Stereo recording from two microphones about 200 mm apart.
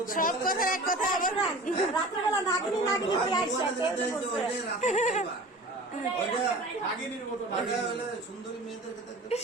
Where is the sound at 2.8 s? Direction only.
20° left (ahead or behind).